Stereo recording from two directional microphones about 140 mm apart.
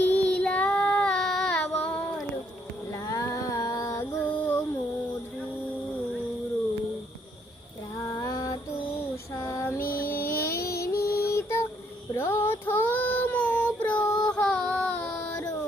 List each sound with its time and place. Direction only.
0.0 s child singing: 10° left (ahead or behind)
2.9 s a sound: 25° left (ahead or behind)
4.4 s music: 15° left (ahead or behind)
7.9 s child singing: 25° left (ahead or behind)
9.3 s female singing: 20° left (ahead or behind)
9.8 s music: 90° left
10.2 s a sound: 20° left (ahead or behind)
10.8 s music: 20° left (ahead or behind)
12.1 s child singing: 15° left (ahead or behind)
14.0 s child singing: 30° left (ahead or behind)
14.3 s child singing: 5° left (ahead or behind)